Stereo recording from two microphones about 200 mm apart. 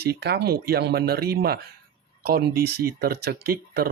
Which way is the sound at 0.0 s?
55° right (ahead or behind).